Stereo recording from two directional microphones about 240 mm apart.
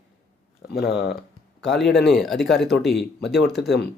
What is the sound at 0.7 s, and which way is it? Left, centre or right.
Speech, left.